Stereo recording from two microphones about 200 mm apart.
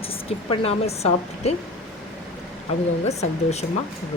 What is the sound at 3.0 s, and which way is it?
Speech, 35° left (ahead or behind).